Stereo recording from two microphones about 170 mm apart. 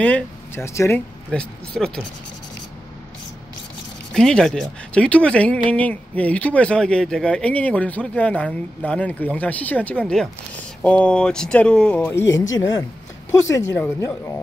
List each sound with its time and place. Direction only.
0.0 s speech: 10° left (ahead or behind)
4.1 s speech: 5° left (ahead or behind)
12.1 s speech: 15° left (ahead or behind)